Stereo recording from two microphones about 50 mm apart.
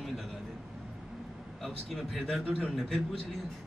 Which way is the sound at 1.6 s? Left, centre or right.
Centre.